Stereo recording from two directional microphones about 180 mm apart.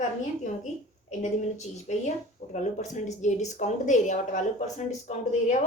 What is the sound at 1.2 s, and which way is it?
Speech, 40° left (ahead or behind).